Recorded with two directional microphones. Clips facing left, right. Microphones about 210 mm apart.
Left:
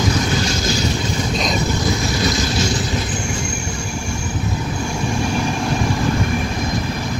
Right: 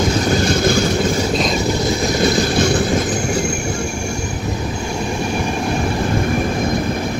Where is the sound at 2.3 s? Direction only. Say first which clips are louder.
Right 5 dB; 55° right (ahead or behind).